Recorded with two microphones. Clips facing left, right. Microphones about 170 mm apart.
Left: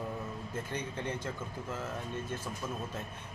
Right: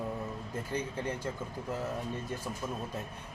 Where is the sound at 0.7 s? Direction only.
10° right (ahead or behind).